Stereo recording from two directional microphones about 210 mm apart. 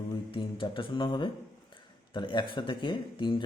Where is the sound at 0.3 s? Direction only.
25° left (ahead or behind).